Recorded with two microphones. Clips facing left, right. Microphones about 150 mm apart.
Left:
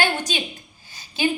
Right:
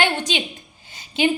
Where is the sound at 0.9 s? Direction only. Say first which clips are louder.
Right 5 dB; 20° right (ahead or behind).